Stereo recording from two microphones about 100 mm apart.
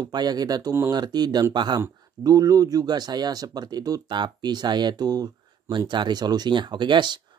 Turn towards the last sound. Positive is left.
turn(degrees=-50)  # may be behind; listen again after turning